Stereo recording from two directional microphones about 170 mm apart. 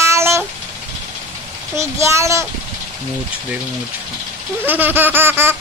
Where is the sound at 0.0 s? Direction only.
15° right (ahead or behind).